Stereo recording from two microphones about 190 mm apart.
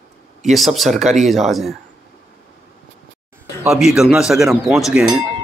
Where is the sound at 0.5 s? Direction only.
Centre (ahead or behind).